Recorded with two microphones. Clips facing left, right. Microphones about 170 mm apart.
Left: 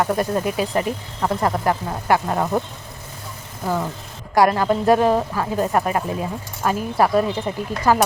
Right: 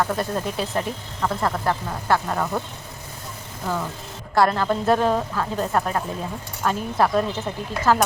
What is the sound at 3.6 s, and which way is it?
A woman's voice, 15° left (ahead or behind).